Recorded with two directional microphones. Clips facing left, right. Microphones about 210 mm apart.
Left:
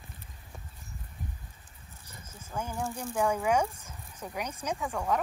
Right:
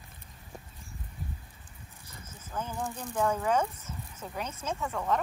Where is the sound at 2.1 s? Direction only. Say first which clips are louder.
Left 1 dB; 10° left (ahead or behind).